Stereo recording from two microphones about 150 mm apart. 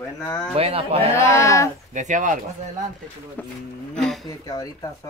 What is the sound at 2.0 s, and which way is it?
Speech, 55° right (ahead or behind).